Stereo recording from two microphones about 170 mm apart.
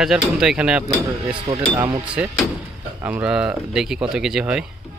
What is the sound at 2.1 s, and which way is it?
Speech, 5° right (ahead or behind).